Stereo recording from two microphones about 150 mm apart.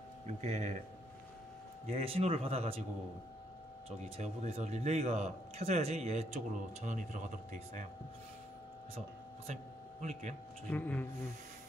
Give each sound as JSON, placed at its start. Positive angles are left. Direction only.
{"t": 0.3, "sound": "speech", "side_deg": -50}
{"t": 1.9, "sound": "speech", "side_deg": -40}
{"t": 4.0, "sound": "speech", "side_deg": -50}
{"t": 9.5, "sound": "speech", "side_deg": -50}
{"t": 10.7, "sound": "speech", "side_deg": 10}